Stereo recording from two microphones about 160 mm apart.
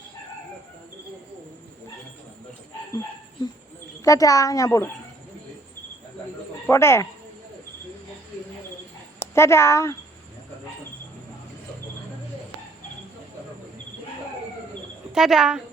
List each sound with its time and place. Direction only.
4.0 s a child's voice: 20° left (ahead or behind)
6.7 s speech: 15° left (ahead or behind)
9.1 s speech: 15° left (ahead or behind)
15.1 s speech: 5° right (ahead or behind)